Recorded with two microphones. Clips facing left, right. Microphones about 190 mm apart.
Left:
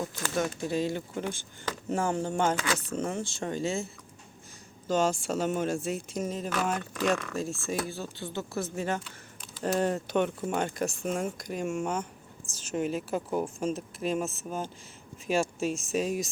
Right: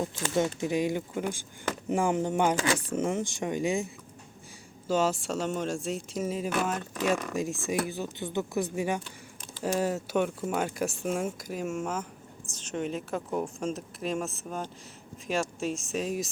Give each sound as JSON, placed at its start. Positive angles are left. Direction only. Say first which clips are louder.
{"t": 0.0, "sound": "speech", "louder": "right 3 dB", "side_deg": -25}
{"t": 4.9, "sound": "speech", "louder": "even", "side_deg": -5}
{"t": 7.2, "sound": "speech", "louder": "right 2 dB", "side_deg": -15}